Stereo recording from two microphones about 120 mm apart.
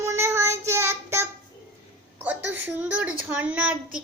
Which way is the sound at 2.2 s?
15° right (ahead or behind).